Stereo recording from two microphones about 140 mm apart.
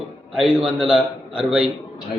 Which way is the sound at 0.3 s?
5° right (ahead or behind).